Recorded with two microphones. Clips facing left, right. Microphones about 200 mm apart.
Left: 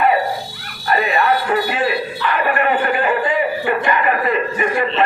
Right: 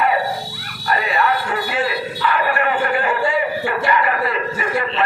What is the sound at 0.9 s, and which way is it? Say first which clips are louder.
Music: left 3 dB; 25° left (ahead or behind).